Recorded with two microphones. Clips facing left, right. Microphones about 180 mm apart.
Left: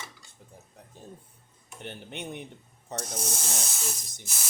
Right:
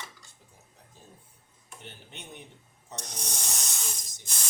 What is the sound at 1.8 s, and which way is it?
Speech, 60° left (ahead or behind).